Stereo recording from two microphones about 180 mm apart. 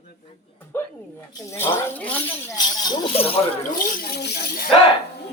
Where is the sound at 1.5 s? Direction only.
10° left (ahead or behind).